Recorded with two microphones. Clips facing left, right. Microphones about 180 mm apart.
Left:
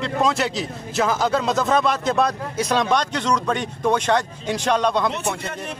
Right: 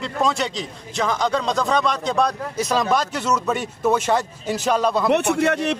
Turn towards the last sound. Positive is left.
turn(degrees=-75)  # may be behind; listen again after turning